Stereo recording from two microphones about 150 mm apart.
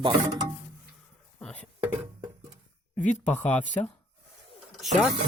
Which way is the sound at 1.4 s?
5° left (ahead or behind).